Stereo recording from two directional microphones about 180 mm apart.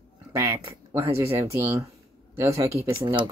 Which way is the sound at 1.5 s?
15° right (ahead or behind).